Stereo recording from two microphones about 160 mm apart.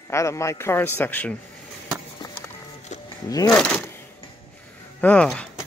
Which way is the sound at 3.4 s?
5° left (ahead or behind).